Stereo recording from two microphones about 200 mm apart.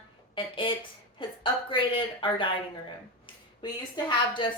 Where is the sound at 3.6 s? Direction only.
25° left (ahead or behind).